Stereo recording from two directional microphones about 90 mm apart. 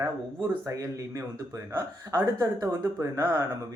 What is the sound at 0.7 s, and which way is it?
Speech, 35° right (ahead or behind).